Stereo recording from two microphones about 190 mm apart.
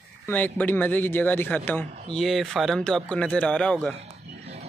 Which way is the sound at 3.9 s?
35° right (ahead or behind).